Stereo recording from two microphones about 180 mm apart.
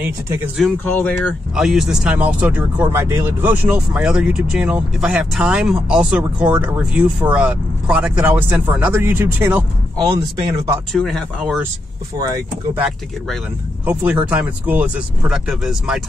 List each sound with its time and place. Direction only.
0.0 s speech: 5° right (ahead or behind)
0.8 s speech: 10° left (ahead or behind)
1.5 s speech: centre (ahead or behind)
10.9 s speech: centre (ahead or behind)
12.2 s speech: 20° right (ahead or behind)
13.8 s speech: 10° right (ahead or behind)